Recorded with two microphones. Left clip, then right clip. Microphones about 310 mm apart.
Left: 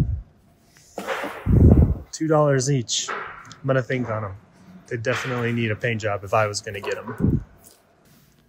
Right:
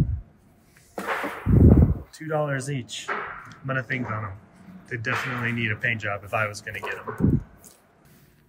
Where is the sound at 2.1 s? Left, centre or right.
Centre.